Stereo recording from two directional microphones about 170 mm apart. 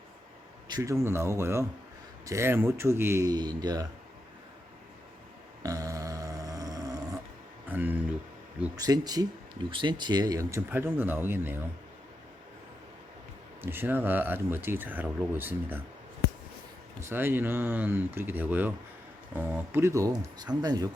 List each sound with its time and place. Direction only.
0.7 s speech: 20° right (ahead or behind)
5.6 s a sound: 20° right (ahead or behind)
8.7 s speech: 20° right (ahead or behind)
13.6 s speech: 10° right (ahead or behind)
17.0 s speech: 15° right (ahead or behind)